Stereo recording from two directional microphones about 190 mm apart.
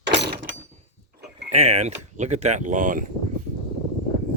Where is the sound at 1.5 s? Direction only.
35° right (ahead or behind).